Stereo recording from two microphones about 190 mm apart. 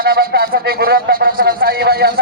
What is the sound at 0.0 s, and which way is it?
A man's voice, 55° right (ahead or behind).